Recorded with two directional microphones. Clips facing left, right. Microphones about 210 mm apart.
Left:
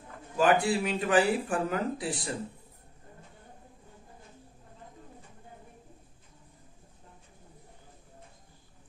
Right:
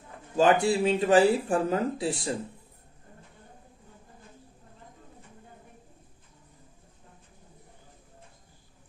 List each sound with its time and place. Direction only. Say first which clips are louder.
0.4 s speech: right 3 dB; 25° right (ahead or behind)